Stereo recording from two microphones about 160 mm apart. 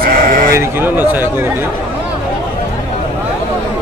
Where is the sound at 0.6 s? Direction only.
15° right (ahead or behind).